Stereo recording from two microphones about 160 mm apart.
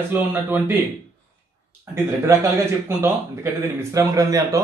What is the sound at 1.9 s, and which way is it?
A man's voice, 15° right (ahead or behind).